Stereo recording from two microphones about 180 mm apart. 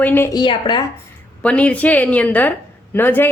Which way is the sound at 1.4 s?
5° left (ahead or behind).